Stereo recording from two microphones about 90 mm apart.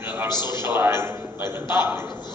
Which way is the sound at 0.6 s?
25° right (ahead or behind).